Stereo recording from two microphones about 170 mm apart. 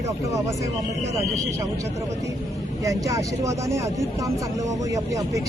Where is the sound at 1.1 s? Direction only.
15° right (ahead or behind).